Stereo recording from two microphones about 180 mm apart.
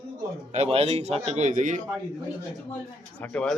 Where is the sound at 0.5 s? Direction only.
35° right (ahead or behind).